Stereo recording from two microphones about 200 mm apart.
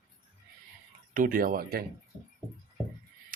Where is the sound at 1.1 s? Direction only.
45° right (ahead or behind).